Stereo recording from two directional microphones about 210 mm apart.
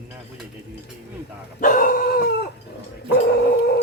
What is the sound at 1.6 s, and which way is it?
Dog, 40° left (ahead or behind).